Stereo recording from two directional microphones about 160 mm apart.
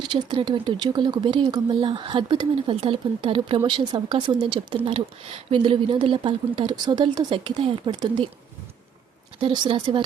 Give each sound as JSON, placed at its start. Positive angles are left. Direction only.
{"t": 0.1, "sound": "speech", "side_deg": -30}
{"t": 9.4, "sound": "speech", "side_deg": -30}